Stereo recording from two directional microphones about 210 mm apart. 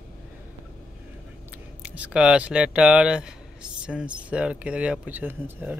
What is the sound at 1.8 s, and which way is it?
Speech, 5° right (ahead or behind).